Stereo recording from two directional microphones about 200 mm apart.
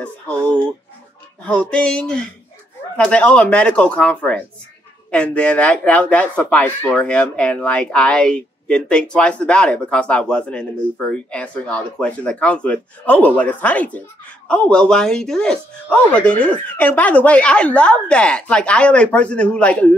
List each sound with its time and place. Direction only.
1.4 s speech: 5° left (ahead or behind)